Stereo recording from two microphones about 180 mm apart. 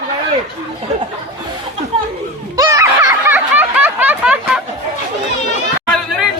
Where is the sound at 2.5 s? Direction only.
15° right (ahead or behind).